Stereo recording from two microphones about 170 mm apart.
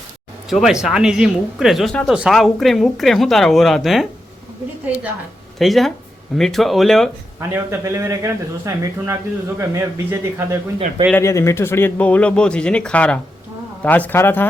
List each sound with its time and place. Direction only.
0.5 s speech: 5° right (ahead or behind)
5.5 s speech: centre (ahead or behind)
7.3 s a man's voice: 15° right (ahead or behind)
11.1 s speech: 15° left (ahead or behind)